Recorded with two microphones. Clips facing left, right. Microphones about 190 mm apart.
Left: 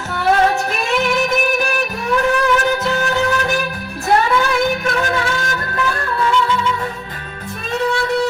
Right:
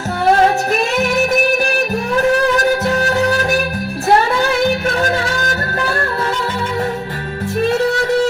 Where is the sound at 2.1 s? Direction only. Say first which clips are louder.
Right 2 dB; 35° right (ahead or behind).